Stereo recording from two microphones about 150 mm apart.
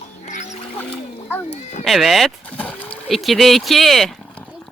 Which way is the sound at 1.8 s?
Centre (ahead or behind).